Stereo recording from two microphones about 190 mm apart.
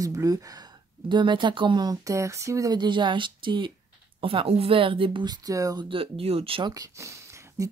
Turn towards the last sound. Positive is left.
turn(degrees=-15)  # may be behind; listen again after turning